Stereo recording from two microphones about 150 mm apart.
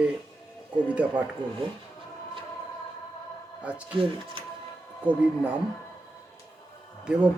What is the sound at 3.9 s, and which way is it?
Speech, 35° right (ahead or behind).